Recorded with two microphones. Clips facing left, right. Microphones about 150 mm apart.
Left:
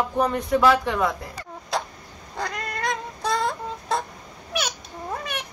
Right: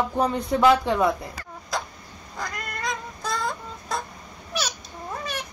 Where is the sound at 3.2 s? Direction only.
30° left (ahead or behind).